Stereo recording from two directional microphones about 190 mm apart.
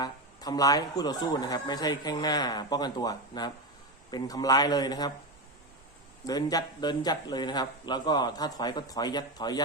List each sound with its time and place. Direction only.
0.0 s speech: 20° left (ahead or behind)
6.2 s speech: 20° left (ahead or behind)